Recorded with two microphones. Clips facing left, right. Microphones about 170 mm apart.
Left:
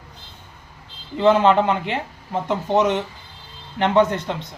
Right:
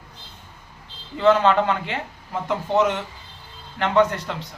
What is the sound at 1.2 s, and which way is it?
Speech, 20° left (ahead or behind).